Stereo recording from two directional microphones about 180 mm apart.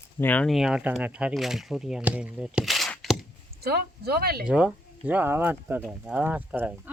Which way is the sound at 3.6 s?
60° right (ahead or behind).